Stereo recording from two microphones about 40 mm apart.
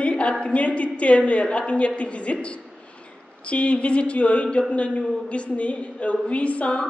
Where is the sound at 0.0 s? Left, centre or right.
Left.